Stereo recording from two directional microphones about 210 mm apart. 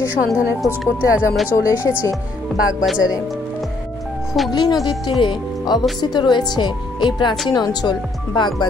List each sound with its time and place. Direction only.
0.1 s speech: 5° right (ahead or behind)
4.5 s speech: 20° left (ahead or behind)